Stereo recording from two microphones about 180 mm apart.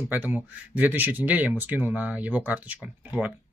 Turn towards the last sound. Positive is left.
turn(degrees=-10)  # may be behind; listen again after turning